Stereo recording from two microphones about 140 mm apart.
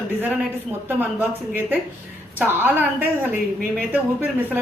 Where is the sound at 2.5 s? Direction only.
15° right (ahead or behind).